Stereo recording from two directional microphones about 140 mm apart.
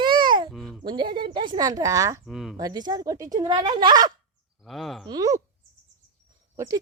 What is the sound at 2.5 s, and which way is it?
A woman's voice, 30° right (ahead or behind).